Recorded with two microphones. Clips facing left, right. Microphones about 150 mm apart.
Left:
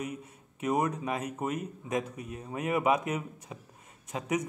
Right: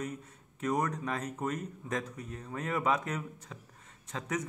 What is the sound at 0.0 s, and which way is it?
A man's voice, 10° left (ahead or behind).